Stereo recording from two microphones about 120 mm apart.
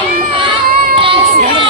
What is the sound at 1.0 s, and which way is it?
Crowd, 45° right (ahead or behind).